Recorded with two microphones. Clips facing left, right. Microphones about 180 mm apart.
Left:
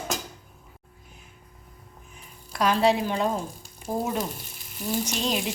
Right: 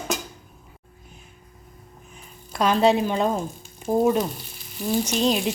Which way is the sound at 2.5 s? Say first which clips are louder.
Right 3 dB; 25° right (ahead or behind).